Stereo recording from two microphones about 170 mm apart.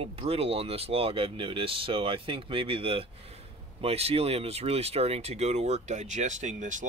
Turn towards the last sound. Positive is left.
turn(degrees=-45)  # may be behind; listen again after turning